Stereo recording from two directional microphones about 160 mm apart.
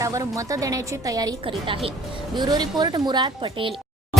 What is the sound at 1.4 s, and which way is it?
A woman's voice, 35° right (ahead or behind).